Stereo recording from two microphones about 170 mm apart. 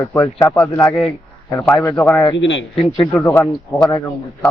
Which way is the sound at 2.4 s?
90° left.